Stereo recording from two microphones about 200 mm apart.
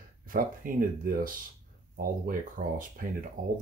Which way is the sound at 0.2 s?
45° right (ahead or behind).